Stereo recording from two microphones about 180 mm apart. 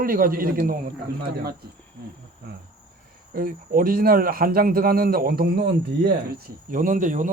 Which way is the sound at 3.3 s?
50° right (ahead or behind).